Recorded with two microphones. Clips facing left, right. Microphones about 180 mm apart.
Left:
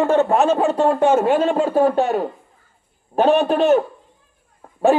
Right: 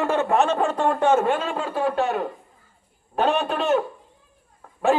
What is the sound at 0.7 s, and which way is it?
Speech, 25° left (ahead or behind).